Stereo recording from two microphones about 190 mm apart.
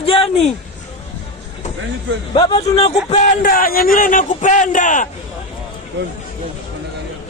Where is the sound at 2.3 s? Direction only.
25° left (ahead or behind); by 5.1 s 45° left (ahead or behind).